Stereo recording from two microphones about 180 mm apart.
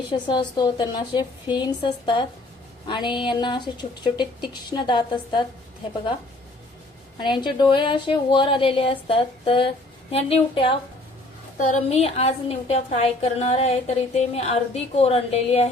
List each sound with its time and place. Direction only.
0.1 s speech: 25° left (ahead or behind)
7.2 s speech: 25° left (ahead or behind)
11.5 s a woman's voice: 45° left (ahead or behind)